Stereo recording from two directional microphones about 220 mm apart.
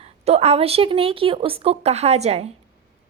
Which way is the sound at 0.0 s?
30° right (ahead or behind).